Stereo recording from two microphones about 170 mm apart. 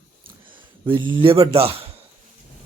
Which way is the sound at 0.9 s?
30° right (ahead or behind).